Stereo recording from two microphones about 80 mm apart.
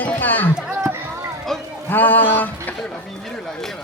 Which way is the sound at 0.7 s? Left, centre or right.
Right.